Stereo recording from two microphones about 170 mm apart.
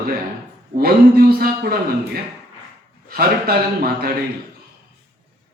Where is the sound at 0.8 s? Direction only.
60° right (ahead or behind).